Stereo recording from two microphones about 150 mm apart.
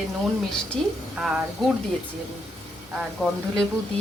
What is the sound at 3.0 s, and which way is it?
Speech, centre (ahead or behind).